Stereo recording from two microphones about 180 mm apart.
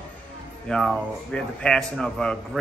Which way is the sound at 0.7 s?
5° left (ahead or behind).